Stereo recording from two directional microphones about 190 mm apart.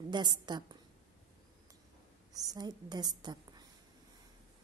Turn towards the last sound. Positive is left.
turn(degrees=-20)  # may be behind; listen again after turning